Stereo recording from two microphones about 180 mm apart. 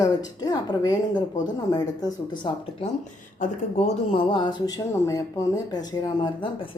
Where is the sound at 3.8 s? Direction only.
30° left (ahead or behind).